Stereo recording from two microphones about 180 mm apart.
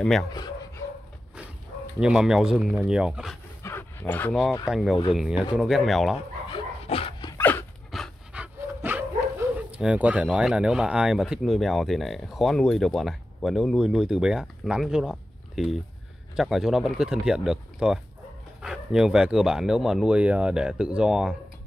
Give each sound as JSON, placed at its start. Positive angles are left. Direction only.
{"t": 2.0, "sound": "speech", "side_deg": -5}
{"t": 3.6, "sound": "dog", "side_deg": 10}
{"t": 4.6, "sound": "speech", "side_deg": 0}
{"t": 6.5, "sound": "dog", "side_deg": 30}
{"t": 7.3, "sound": "dog", "side_deg": 10}
{"t": 7.9, "sound": "pant", "side_deg": -5}
{"t": 9.8, "sound": "speech", "side_deg": -5}